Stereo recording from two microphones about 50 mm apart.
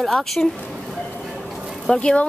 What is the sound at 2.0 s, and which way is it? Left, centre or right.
Speech, left.